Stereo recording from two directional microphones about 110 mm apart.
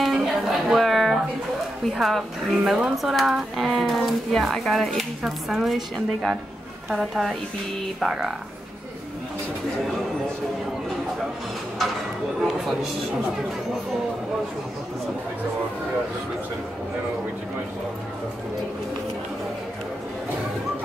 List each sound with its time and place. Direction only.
0.0 s music: 5° right (ahead or behind)
1.9 s speech: centre (ahead or behind)